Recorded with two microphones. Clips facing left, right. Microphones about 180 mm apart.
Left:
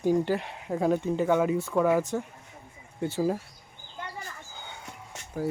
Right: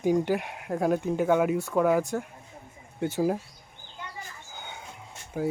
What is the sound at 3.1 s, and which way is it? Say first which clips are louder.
Speech: right 1 dB; 15° right (ahead or behind).